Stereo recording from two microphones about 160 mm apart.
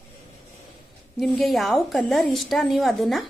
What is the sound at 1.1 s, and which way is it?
A woman's voice, centre (ahead or behind).